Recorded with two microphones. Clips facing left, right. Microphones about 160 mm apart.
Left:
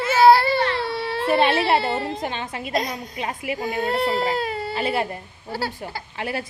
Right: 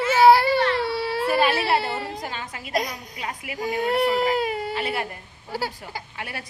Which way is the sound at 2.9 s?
25° left (ahead or behind).